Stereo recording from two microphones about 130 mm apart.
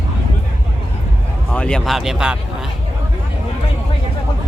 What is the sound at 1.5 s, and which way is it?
Speech, 5° left (ahead or behind).